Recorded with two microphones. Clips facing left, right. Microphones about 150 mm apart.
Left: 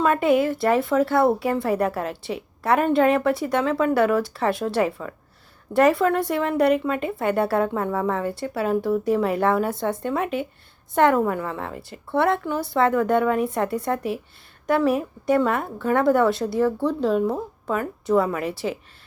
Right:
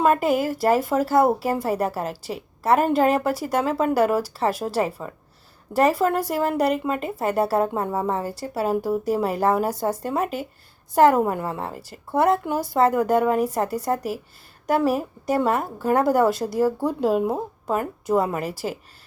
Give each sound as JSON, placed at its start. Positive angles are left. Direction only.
{"t": 0.1, "sound": "speech", "side_deg": -35}
{"t": 16.6, "sound": "speech", "side_deg": -10}
{"t": 18.2, "sound": "speech", "side_deg": -40}